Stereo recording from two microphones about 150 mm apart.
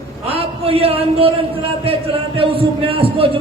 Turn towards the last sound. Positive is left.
turn(degrees=-35)  # may be behind; listen again after turning